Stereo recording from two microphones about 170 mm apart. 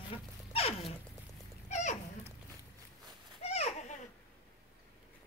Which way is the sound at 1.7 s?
45° left (ahead or behind).